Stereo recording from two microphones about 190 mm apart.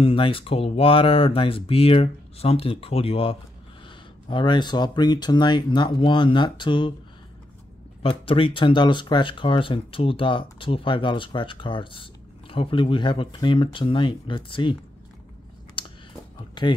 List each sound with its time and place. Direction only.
0.0 s speech: 30° left (ahead or behind)
8.0 s speech: 30° left (ahead or behind)
15.8 s a sound: 25° left (ahead or behind)
16.6 s speech: 25° left (ahead or behind)